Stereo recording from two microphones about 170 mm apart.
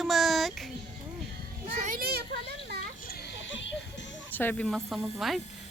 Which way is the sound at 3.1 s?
80° left.